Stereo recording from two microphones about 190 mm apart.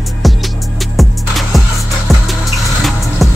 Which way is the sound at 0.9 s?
Centre (ahead or behind).